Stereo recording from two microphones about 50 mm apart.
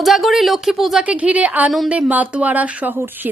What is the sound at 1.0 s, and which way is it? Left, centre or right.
Speech, right.